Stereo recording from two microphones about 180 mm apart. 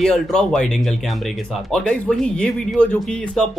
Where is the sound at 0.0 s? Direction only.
5° left (ahead or behind).